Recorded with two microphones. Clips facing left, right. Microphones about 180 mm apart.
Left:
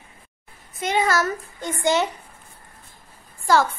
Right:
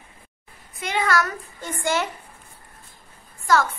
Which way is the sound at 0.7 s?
20° left (ahead or behind).